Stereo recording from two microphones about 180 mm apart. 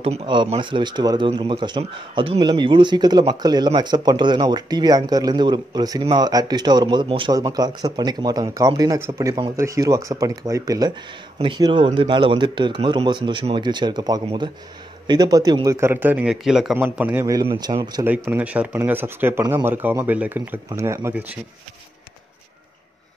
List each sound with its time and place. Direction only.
0.0 s speech: 30° right (ahead or behind)
18.0 s speech: 10° right (ahead or behind)